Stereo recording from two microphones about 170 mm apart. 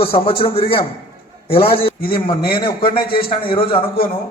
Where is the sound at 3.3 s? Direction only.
30° left (ahead or behind).